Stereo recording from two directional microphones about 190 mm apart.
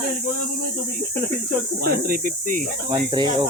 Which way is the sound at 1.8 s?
50° right (ahead or behind).